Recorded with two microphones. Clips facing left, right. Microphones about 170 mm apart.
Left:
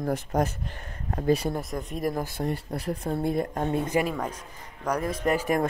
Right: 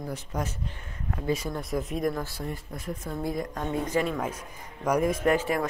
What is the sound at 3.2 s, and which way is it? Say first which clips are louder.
Speech: left 3 dB; 60° left (ahead or behind).